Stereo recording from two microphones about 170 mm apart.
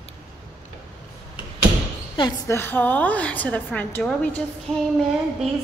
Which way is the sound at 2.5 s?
10° left (ahead or behind).